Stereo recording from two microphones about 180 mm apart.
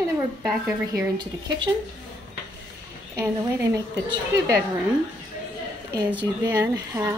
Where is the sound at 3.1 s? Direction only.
20° right (ahead or behind).